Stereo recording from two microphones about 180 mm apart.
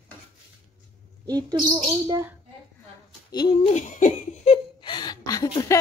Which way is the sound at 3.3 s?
25° left (ahead or behind).